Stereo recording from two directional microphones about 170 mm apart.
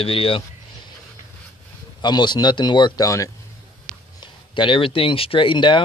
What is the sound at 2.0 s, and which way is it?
Speech, 25° left (ahead or behind).